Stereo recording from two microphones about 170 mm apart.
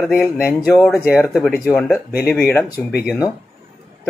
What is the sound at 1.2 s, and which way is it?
Speech, centre (ahead or behind).